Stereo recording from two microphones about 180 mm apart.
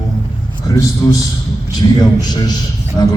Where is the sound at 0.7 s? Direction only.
20° left (ahead or behind).